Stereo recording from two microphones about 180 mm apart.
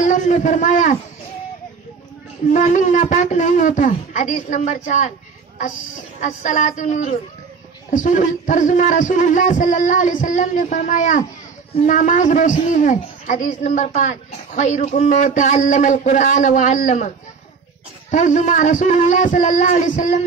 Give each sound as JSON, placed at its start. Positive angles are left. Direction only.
{"t": 0.0, "sound": "a man's voice", "side_deg": 45}
{"t": 2.5, "sound": "a man's voice", "side_deg": 45}
{"t": 6.2, "sound": "a man's voice", "side_deg": 45}
{"t": 18.1, "sound": "a man's voice", "side_deg": 45}